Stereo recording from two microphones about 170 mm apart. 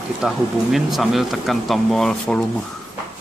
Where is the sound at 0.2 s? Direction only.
Centre (ahead or behind).